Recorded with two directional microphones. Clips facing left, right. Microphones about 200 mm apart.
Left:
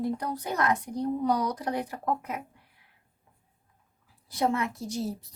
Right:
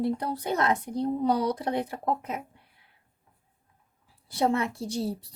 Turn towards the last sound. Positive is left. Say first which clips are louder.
# right 2 dB
turn(degrees=-30)  # may be behind; listen again after turning